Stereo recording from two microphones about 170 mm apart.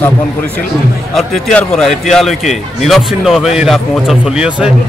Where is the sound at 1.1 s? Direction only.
Centre (ahead or behind).